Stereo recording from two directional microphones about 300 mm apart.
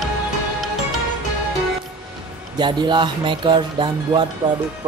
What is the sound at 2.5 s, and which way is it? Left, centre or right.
Speech, centre.